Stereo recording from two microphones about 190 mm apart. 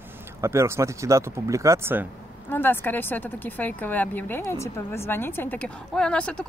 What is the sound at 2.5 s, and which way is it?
Speech, 10° left (ahead or behind).